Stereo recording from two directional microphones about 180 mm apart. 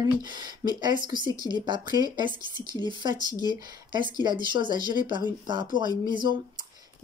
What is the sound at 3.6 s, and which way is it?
Speech, 25° right (ahead or behind).